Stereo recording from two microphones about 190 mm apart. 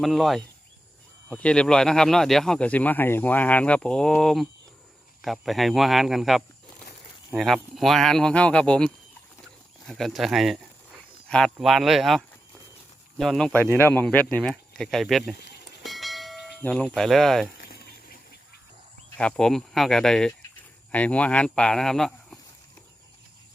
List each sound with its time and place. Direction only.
0.0 s speech: centre (ahead or behind)
15.8 s church bell: centre (ahead or behind)
17.6 s a sound: 50° left (ahead or behind)
19.1 s speech: 5° left (ahead or behind)